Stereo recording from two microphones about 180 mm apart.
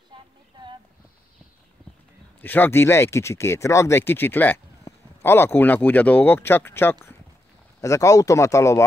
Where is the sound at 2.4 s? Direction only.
10° left (ahead or behind).